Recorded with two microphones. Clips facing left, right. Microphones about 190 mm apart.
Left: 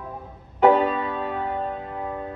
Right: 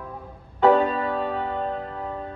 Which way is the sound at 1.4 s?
15° left (ahead or behind).